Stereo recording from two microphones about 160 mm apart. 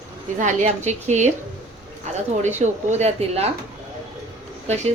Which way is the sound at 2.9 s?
40° right (ahead or behind).